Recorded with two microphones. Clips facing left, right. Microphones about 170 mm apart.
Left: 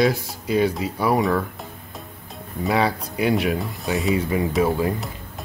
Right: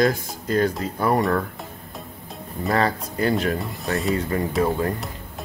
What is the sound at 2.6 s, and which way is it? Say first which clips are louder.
Speech: left 1 dB; 5° left (ahead or behind).